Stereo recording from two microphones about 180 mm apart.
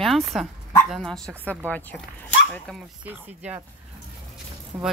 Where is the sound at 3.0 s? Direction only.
10° right (ahead or behind).